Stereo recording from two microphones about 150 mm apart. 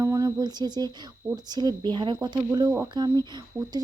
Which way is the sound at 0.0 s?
20° right (ahead or behind).